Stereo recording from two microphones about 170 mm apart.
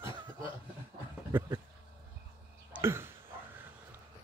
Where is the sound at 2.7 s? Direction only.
15° right (ahead or behind).